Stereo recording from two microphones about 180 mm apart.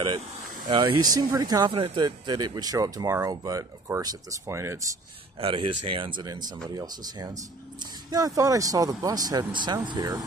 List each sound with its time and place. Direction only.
0.7 s speech: 25° right (ahead or behind)
5.4 s speech: 30° right (ahead or behind)